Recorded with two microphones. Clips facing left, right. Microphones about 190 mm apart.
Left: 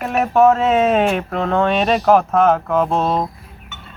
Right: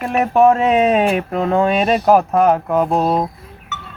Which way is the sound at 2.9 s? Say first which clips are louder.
Right 2 dB; 40° right (ahead or behind).